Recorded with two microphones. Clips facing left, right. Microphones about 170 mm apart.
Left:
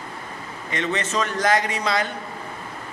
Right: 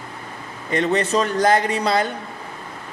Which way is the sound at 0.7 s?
35° right (ahead or behind).